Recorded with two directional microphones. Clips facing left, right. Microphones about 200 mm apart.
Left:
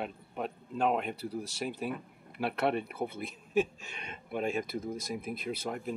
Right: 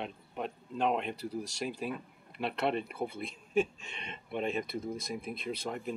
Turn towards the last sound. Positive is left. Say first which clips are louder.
# left 1 dB
turn(degrees=5)  # may be behind; listen again after turning